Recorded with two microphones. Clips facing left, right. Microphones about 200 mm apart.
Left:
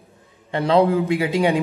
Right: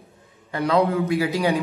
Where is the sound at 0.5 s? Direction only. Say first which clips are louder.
Left 3 dB; 30° left (ahead or behind).